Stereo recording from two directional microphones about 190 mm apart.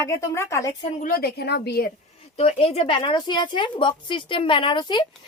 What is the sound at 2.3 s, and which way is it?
Speech, 30° left (ahead or behind).